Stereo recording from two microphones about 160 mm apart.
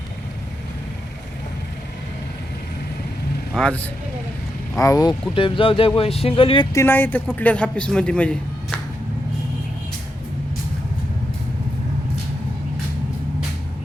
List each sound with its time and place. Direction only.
3.5 s speech: 5° left (ahead or behind)
4.7 s speech: 20° left (ahead or behind)
6.7 s a man's voice: 10° left (ahead or behind)